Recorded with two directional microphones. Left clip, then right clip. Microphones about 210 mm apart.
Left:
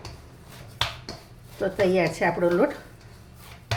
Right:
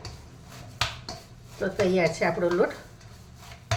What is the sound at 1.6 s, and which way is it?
A woman's voice, 25° left (ahead or behind).